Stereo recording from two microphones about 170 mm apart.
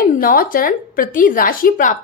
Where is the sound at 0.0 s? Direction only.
55° left (ahead or behind).